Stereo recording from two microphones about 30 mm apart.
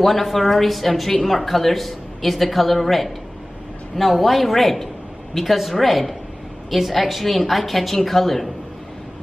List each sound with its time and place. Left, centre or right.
0.0 s a woman's voice: centre